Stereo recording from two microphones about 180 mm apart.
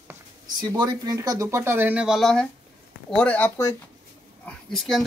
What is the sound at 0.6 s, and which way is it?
Speech, 20° right (ahead or behind).